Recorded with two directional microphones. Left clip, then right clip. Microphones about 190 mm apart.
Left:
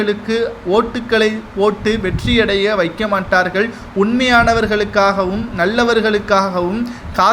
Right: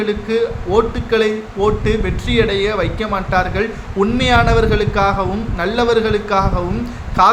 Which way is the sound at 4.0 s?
5° left (ahead or behind).